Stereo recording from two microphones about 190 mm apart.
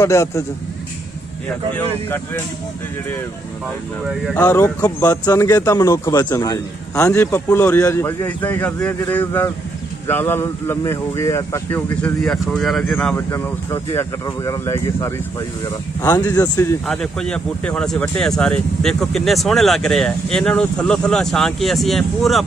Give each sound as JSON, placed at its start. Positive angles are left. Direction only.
{"t": 0.0, "sound": "speech", "side_deg": 15}
{"t": 1.7, "sound": "speech", "side_deg": 10}
{"t": 4.1, "sound": "speech", "side_deg": 5}
{"t": 4.5, "sound": "speech", "side_deg": 15}
{"t": 16.2, "sound": "speech", "side_deg": 15}
{"t": 16.8, "sound": "speech", "side_deg": 0}